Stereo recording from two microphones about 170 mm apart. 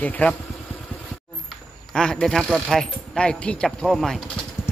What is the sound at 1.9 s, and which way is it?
Speech, 5° left (ahead or behind).